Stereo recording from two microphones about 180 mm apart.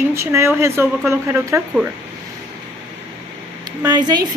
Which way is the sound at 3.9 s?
25° right (ahead or behind).